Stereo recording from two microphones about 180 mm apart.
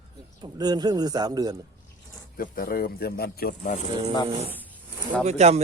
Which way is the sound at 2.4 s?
55° left (ahead or behind).